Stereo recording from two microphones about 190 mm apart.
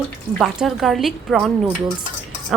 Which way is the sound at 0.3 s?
Centre (ahead or behind).